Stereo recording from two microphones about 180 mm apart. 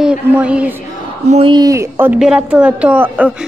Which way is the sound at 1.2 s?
40° right (ahead or behind).